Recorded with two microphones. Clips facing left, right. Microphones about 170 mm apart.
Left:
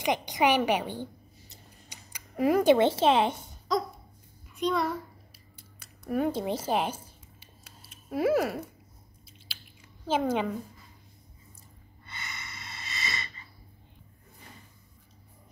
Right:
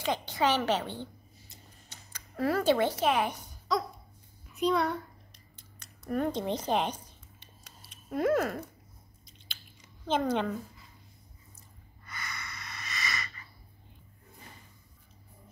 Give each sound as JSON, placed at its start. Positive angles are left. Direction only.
{"t": 0.0, "sound": "a woman's voice", "side_deg": 15}
{"t": 4.6, "sound": "a woman's voice", "side_deg": 0}
{"t": 5.8, "sound": "a sound", "side_deg": 5}
{"t": 10.0, "sound": "a woman's voice", "side_deg": 5}
{"t": 12.1, "sound": "snort", "side_deg": 25}